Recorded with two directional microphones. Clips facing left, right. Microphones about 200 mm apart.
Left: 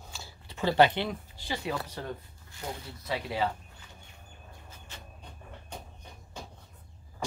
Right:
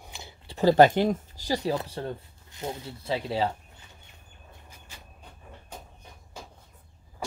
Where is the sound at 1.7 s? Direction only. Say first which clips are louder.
Right 5 dB; 25° right (ahead or behind).